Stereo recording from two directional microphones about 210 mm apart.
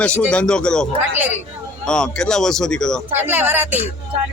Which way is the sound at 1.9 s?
5° left (ahead or behind).